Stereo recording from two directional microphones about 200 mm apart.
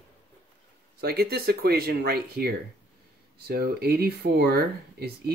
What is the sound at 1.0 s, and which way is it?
Speech, 50° right (ahead or behind).